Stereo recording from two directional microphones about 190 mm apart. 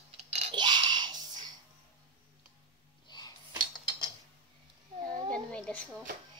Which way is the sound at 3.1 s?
20° left (ahead or behind).